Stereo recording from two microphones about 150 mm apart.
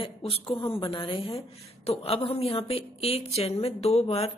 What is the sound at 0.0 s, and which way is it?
A woman's voice, 40° left (ahead or behind).